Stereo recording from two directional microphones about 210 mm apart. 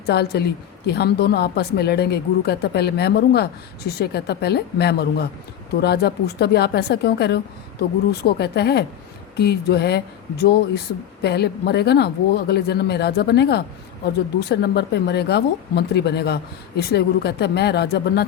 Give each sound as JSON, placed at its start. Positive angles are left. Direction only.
{"t": 0.0, "sound": "speech", "side_deg": 50}